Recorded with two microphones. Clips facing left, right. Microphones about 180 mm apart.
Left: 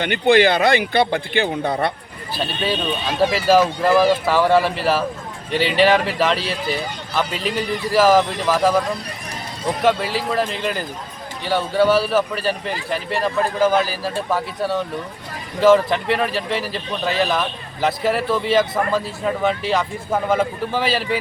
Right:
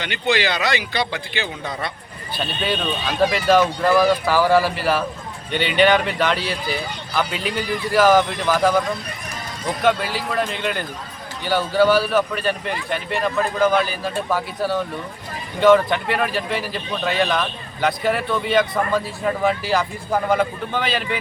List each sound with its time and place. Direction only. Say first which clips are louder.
0.0 s a man's voice: left 7 dB; 55° left (ahead or behind)
2.3 s speech: left 1 dB; centre (ahead or behind)